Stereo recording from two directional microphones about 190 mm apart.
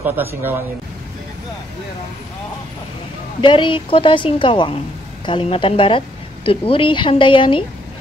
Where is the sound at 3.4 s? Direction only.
25° left (ahead or behind).